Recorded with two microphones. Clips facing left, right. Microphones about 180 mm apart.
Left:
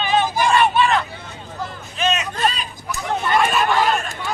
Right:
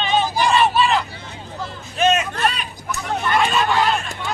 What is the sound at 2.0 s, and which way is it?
Vehicle, 50° right (ahead or behind).